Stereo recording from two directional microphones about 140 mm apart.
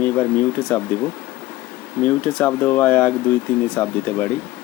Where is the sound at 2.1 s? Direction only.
15° left (ahead or behind).